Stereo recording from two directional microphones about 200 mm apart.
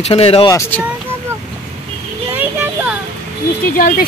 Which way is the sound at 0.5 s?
10° left (ahead or behind).